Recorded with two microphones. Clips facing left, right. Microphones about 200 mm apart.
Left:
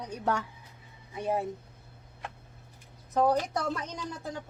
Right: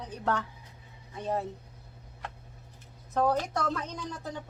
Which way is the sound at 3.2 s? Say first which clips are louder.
Left 1 dB; 10° left (ahead or behind).